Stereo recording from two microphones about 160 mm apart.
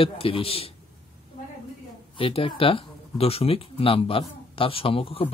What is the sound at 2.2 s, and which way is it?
Speech, 35° left (ahead or behind).